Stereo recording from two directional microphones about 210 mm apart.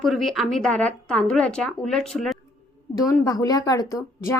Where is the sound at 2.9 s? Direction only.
15° left (ahead or behind).